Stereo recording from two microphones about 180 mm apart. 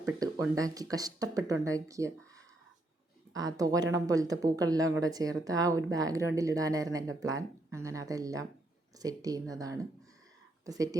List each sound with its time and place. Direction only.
0.0 s speech: 20° right (ahead or behind)
3.3 s speech: 20° right (ahead or behind)